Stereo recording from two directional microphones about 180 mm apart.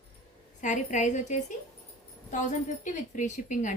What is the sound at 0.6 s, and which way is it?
Speech, 45° left (ahead or behind).